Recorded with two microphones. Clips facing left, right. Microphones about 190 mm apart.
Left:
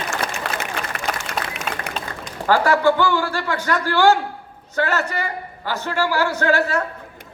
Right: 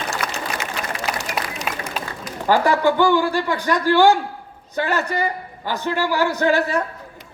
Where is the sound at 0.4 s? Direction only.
65° left (ahead or behind).